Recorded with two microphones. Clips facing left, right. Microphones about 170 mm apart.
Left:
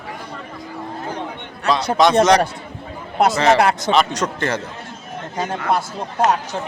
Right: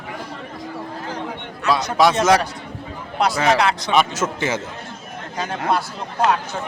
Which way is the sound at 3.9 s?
5° right (ahead or behind).